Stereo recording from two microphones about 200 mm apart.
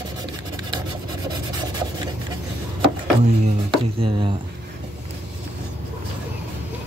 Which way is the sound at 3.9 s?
25° right (ahead or behind).